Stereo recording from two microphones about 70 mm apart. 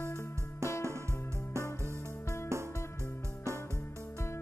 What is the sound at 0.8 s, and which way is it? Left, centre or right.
Music, right.